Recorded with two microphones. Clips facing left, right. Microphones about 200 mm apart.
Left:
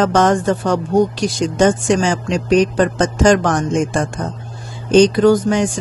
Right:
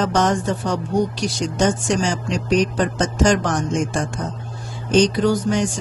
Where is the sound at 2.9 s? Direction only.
55° left (ahead or behind).